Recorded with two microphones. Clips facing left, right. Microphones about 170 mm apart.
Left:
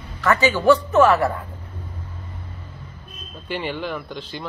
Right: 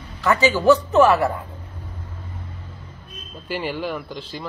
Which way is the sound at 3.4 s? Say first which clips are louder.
Right 1 dB; 5° right (ahead or behind).